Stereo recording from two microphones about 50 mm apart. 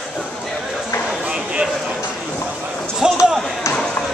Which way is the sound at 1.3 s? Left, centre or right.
Centre.